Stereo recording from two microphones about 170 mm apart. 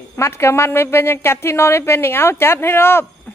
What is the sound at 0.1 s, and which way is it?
A woman's voice, 15° left (ahead or behind).